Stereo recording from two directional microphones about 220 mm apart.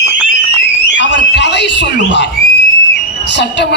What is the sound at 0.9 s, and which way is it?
Fire alarm, 55° left (ahead or behind).